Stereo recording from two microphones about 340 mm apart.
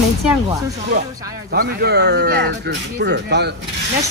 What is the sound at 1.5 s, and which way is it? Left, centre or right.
Speech, right.